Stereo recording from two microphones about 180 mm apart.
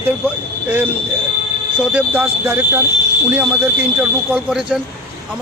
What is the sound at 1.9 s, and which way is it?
Speech, 10° right (ahead or behind).